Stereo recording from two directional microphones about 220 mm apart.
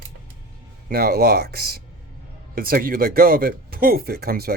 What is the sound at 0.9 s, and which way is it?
Speech, 45° right (ahead or behind).